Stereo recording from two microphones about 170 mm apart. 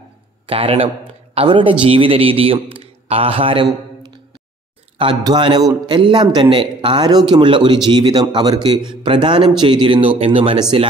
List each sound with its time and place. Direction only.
0.5 s a man's voice: 35° right (ahead or behind)